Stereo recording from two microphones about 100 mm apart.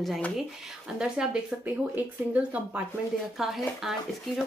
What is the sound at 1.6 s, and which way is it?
Speech, 15° right (ahead or behind).